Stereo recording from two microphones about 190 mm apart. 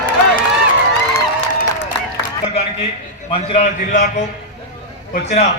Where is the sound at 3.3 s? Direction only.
35° left (ahead or behind).